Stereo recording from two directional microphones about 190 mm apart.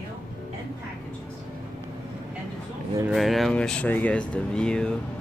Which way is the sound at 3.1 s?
Centre (ahead or behind).